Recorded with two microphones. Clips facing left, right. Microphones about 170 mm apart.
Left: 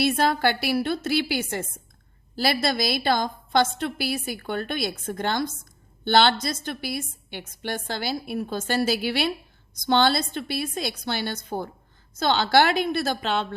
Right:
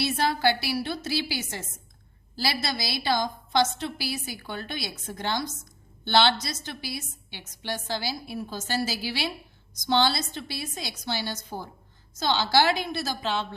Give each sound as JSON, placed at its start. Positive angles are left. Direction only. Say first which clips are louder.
{"t": 0.0, "sound": "a woman's voice", "louder": "left 3 dB", "side_deg": 55}